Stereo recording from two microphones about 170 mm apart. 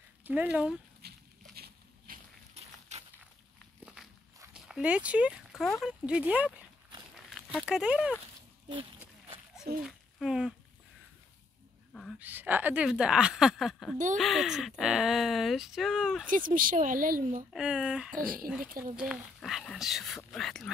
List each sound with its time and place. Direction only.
0.2 s speech: 10° right (ahead or behind)
1.0 s a sound: 70° right (ahead or behind)
2.9 s a sound: 40° right (ahead or behind)
3.8 s walk: 5° right (ahead or behind)
4.6 s speech: 5° right (ahead or behind)
7.2 s a sound: centre (ahead or behind)
9.8 s speech: centre (ahead or behind)
11.9 s a sound: centre (ahead or behind)
12.2 s speech: 10° right (ahead or behind)
16.3 s speech: 55° right (ahead or behind)
17.5 s speech: 5° right (ahead or behind)
18.1 s speech: 55° right (ahead or behind)
18.9 s speech: centre (ahead or behind)